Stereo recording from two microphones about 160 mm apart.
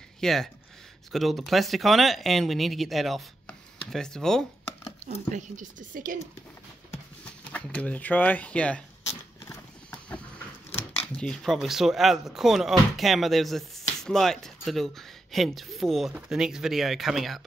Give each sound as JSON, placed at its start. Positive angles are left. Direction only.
{"t": 0.2, "sound": "speech", "side_deg": 0}
{"t": 5.3, "sound": "speech", "side_deg": -55}
{"t": 7.2, "sound": "speech", "side_deg": 10}
{"t": 9.4, "sound": "horse", "side_deg": 20}
{"t": 10.7, "sound": "speech", "side_deg": 10}